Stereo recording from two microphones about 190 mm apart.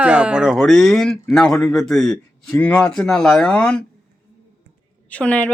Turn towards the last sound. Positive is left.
turn(degrees=5)  # may be behind; listen again after turning